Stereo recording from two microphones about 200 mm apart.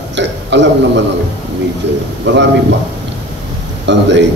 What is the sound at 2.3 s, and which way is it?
Speech, 65° right (ahead or behind).